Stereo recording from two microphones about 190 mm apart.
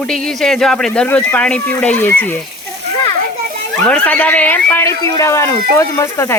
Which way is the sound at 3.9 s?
5° left (ahead or behind).